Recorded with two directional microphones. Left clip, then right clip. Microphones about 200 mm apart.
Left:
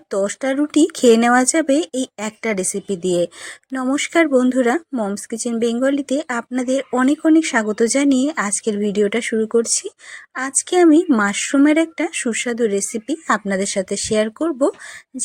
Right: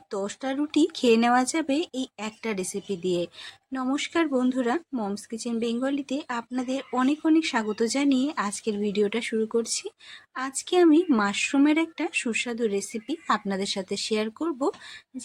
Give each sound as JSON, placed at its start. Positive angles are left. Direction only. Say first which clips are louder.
{"t": 0.1, "sound": "speech", "louder": "left 10 dB", "side_deg": 25}